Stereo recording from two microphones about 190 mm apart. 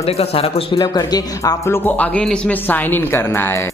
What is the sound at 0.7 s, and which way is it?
Speech, 20° left (ahead or behind).